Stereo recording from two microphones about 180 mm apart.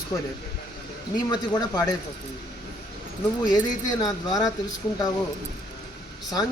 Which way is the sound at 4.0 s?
20° left (ahead or behind).